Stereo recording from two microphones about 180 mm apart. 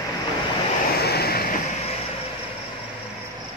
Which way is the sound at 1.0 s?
60° left (ahead or behind).